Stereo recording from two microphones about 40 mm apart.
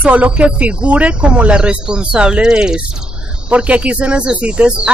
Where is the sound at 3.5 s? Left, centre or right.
Right.